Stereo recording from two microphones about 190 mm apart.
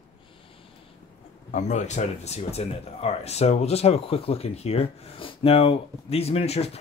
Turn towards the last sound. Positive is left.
turn(degrees=35)  # may be behind; listen again after turning